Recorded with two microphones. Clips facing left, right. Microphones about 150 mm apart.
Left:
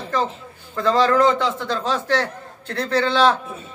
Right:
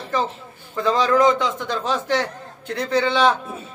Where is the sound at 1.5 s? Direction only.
20° right (ahead or behind).